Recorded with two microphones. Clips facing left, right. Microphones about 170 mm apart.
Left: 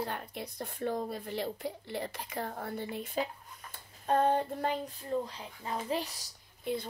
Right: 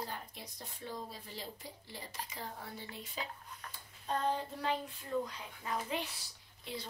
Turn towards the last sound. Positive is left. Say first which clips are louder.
# left 9 dB
turn(degrees=50)  # may be behind; listen again after turning